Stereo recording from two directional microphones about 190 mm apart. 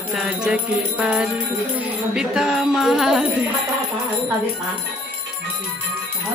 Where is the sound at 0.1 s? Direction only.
5° right (ahead or behind).